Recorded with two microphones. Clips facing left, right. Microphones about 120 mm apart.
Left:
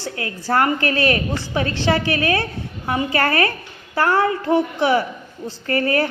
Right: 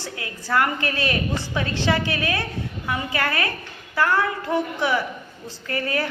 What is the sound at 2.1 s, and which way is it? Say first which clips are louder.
A woman's voice: left 5 dB; 35° left (ahead or behind).